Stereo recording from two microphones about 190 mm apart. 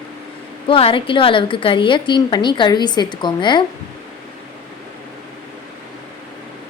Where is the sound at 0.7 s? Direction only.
30° left (ahead or behind).